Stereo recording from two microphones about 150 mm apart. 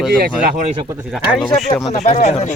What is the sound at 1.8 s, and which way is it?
Speech, 45° left (ahead or behind).